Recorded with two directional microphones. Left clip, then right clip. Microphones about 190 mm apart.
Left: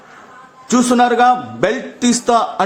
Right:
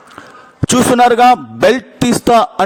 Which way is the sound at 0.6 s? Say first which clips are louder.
Right 4 dB; 55° right (ahead or behind).